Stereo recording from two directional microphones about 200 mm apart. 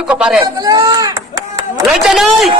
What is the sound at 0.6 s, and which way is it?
Chop, 15° right (ahead or behind).